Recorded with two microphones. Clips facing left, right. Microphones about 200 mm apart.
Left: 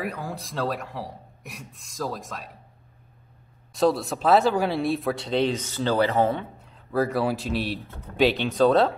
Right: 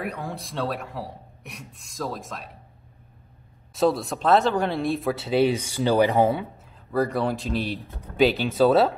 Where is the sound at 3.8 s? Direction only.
Centre (ahead or behind).